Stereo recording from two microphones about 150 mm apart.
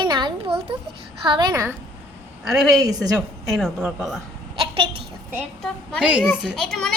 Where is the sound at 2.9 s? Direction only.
25° right (ahead or behind).